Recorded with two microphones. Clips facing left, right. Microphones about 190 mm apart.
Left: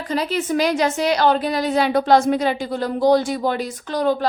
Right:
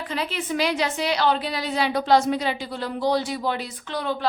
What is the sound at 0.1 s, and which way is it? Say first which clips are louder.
A woman's voice: left 7 dB; 40° left (ahead or behind).